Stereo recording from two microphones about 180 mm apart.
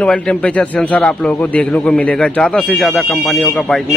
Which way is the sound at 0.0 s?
5° left (ahead or behind).